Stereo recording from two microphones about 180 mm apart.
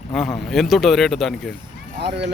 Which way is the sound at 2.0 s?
70° right (ahead or behind).